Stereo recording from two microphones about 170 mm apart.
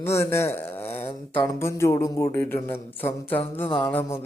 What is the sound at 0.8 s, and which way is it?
Speech, 35° left (ahead or behind).